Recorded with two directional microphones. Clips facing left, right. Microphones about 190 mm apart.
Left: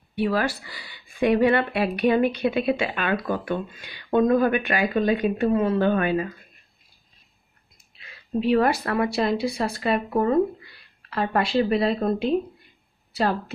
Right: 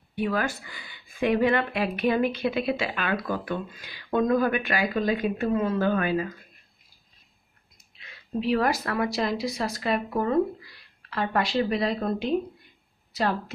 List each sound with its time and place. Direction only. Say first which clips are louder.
0.2 s speech: left 3 dB; 30° left (ahead or behind)
2.5 s speech: left 3 dB; 15° left (ahead or behind)
8.0 s a woman's voice: left 4 dB; 30° left (ahead or behind)